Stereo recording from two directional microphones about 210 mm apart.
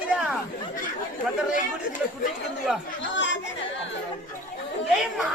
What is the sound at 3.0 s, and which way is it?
Chatter, 60° left (ahead or behind).